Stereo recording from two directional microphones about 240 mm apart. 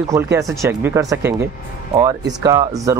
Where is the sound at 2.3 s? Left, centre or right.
Centre.